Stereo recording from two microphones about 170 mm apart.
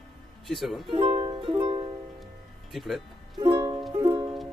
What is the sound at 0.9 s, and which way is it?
Music, 30° right (ahead or behind).